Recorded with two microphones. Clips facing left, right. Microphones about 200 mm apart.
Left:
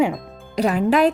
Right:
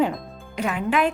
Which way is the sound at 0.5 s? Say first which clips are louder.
Left 6 dB; 35° left (ahead or behind).